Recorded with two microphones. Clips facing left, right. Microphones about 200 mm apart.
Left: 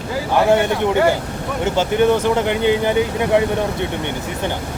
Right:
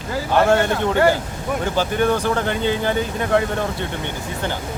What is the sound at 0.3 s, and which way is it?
Speech, 15° left (ahead or behind).